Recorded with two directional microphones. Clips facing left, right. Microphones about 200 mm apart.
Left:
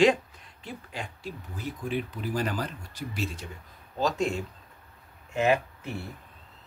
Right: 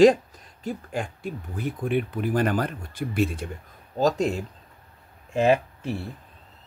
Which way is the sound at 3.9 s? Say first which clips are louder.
Right 5 dB; 40° right (ahead or behind).